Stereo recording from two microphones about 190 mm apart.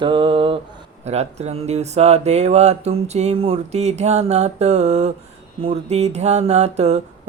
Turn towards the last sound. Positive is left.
turn(degrees=-35)  # may be behind; listen again after turning